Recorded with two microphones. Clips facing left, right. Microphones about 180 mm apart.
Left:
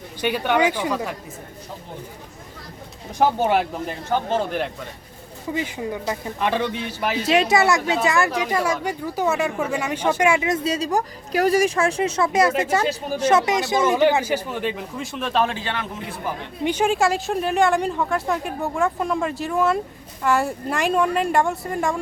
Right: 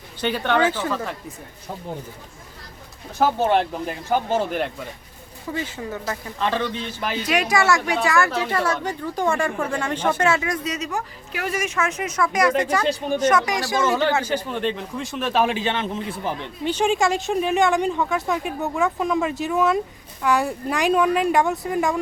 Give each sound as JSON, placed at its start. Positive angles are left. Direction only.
{"t": 0.2, "sound": "speech", "side_deg": 10}
{"t": 3.2, "sound": "speech", "side_deg": 10}
{"t": 4.1, "sound": "speech", "side_deg": -5}
{"t": 5.5, "sound": "speech", "side_deg": 15}
{"t": 7.3, "sound": "speech", "side_deg": 25}
{"t": 10.5, "sound": "speech", "side_deg": 30}
{"t": 12.8, "sound": "speech", "side_deg": 5}
{"t": 13.3, "sound": "speech", "side_deg": 20}
{"t": 16.6, "sound": "speech", "side_deg": 5}